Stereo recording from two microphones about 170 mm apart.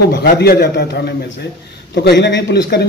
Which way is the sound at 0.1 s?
70° left (ahead or behind).